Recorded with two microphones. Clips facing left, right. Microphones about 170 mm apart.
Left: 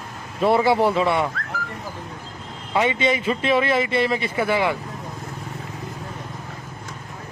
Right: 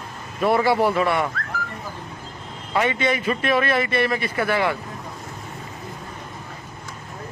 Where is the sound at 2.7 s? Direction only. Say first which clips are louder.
Left 1 dB; 15° left (ahead or behind).